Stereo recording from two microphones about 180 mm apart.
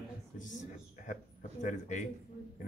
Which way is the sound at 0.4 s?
45° left (ahead or behind).